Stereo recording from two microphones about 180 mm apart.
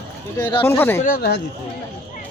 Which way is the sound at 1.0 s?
60° left (ahead or behind).